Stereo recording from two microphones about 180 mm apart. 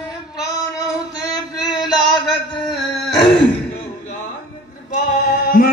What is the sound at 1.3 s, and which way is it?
Music, 25° left (ahead or behind).